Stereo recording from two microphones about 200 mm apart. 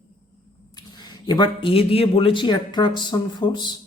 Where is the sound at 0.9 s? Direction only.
20° left (ahead or behind).